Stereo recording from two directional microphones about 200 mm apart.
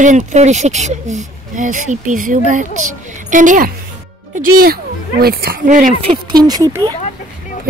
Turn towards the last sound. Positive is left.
turn(degrees=-15)  # may be behind; listen again after turning